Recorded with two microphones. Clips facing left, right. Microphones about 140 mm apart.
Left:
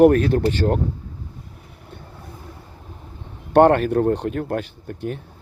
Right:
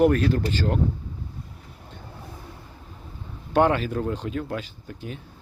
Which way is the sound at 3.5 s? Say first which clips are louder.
Left 7 dB; 55° left (ahead or behind).